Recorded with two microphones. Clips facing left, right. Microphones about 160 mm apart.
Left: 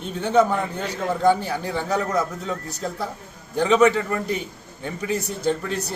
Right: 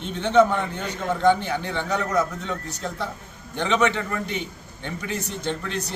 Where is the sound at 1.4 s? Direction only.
40° left (ahead or behind).